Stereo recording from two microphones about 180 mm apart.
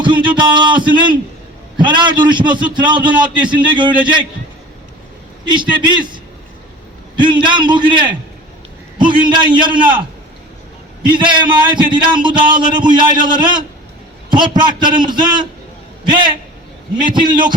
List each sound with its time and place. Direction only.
0.0 s a man's voice: 25° right (ahead or behind)
5.5 s a man's voice: 25° right (ahead or behind)
7.4 s a man's voice: 25° right (ahead or behind)
11.2 s a man's voice: 25° right (ahead or behind)